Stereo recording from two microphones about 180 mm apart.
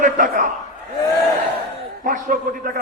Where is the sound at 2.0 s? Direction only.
50° right (ahead or behind).